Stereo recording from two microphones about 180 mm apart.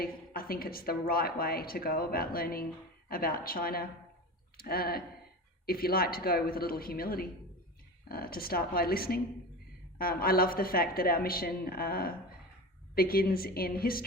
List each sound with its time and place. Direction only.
0.0 s a woman's voice: 55° left (ahead or behind)